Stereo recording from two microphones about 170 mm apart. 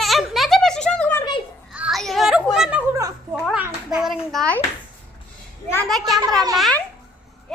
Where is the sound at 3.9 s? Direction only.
Centre (ahead or behind).